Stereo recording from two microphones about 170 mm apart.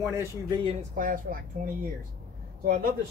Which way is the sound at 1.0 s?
55° right (ahead or behind).